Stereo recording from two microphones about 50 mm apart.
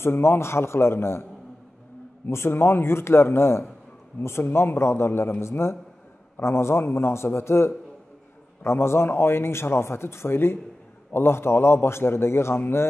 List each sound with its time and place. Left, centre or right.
0.0 s speech: left
2.2 s speech: left